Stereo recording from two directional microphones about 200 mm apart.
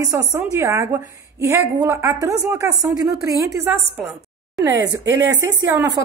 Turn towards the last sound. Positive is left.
turn(degrees=-15)  # may be behind; listen again after turning